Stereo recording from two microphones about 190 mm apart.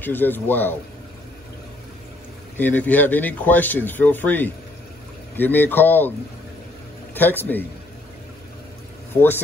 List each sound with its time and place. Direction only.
0.0 s speech: 10° left (ahead or behind)
2.5 s speech: 10° left (ahead or behind)
7.2 s speech: 10° left (ahead or behind)
9.1 s speech: 10° left (ahead or behind)